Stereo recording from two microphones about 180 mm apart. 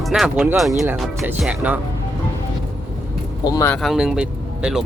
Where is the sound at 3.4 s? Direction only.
15° left (ahead or behind).